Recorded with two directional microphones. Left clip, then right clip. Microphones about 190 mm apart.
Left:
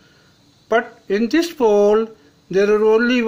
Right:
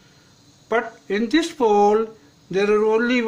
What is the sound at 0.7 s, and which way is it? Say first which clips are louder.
A man's voice: left 4 dB; 30° left (ahead or behind).